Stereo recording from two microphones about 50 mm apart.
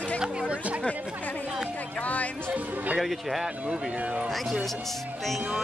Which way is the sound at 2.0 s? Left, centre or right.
Left.